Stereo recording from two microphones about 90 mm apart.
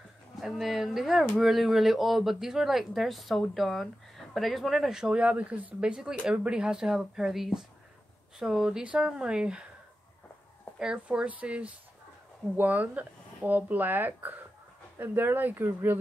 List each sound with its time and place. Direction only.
0.4 s speech: centre (ahead or behind)
10.8 s speech: 10° right (ahead or behind); by 16.0 s 25° right (ahead or behind)